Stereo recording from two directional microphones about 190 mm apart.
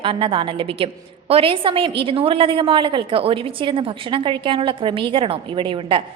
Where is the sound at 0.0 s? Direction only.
30° right (ahead or behind).